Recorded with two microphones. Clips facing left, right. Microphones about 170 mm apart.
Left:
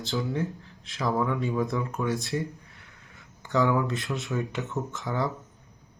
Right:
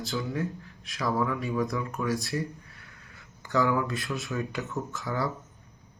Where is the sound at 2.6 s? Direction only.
20° left (ahead or behind).